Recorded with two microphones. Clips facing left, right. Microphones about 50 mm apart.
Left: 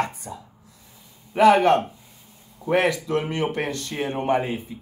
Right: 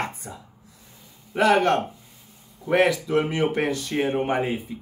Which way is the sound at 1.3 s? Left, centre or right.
Centre.